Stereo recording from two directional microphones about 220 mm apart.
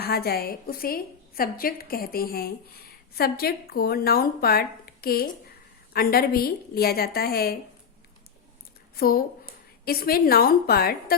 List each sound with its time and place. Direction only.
0.0 s a woman's voice: 45° left (ahead or behind)
9.0 s a woman's voice: 45° left (ahead or behind)